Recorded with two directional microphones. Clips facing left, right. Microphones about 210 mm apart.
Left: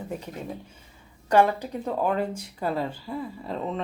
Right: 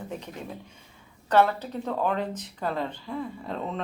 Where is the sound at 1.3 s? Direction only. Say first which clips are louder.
Left 1 dB; 10° left (ahead or behind).